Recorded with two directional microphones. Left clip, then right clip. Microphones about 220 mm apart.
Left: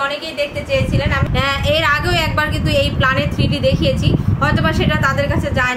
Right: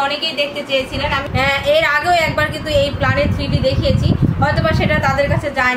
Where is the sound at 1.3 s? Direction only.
35° left (ahead or behind).